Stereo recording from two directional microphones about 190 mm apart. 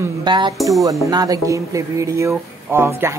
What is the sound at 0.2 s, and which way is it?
Speech, 25° right (ahead or behind).